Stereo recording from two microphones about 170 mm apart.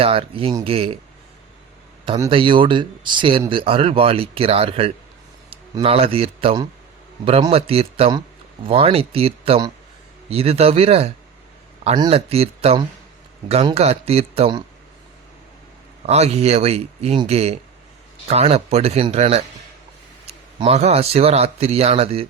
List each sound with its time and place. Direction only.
0.0 s speech: 35° right (ahead or behind)
2.0 s a man's voice: 25° right (ahead or behind)
12.1 s speech: 35° right (ahead or behind)
16.0 s speech: 40° right (ahead or behind)